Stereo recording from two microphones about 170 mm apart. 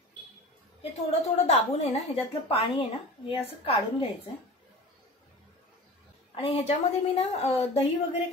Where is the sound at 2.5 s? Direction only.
35° left (ahead or behind).